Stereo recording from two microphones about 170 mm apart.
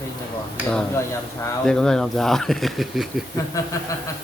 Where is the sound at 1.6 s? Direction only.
5° left (ahead or behind).